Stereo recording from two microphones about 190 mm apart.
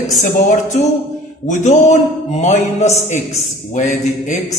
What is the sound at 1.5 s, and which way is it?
Mantra, 40° left (ahead or behind).